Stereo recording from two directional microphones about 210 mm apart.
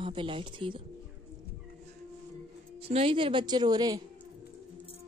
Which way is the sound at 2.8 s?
30° right (ahead or behind).